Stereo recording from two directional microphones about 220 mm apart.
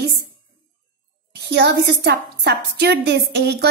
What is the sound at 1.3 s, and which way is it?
A woman's voice, 50° right (ahead or behind).